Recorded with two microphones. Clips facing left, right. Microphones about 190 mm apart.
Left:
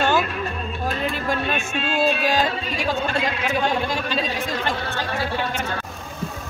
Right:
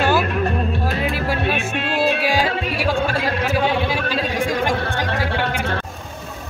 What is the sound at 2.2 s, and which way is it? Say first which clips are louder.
Music: right 1 dB; 10° right (ahead or behind).